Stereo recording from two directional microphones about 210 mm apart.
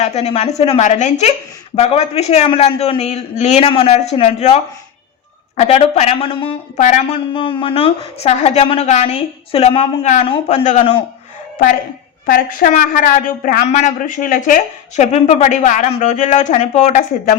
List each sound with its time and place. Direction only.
0.0 s a woman's voice: 30° left (ahead or behind)
12.2 s a woman's voice: 40° left (ahead or behind)